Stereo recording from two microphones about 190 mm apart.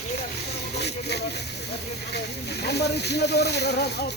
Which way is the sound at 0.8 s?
60° left (ahead or behind).